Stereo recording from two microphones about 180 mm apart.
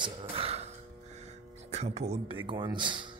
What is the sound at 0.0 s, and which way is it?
Music, 30° right (ahead or behind).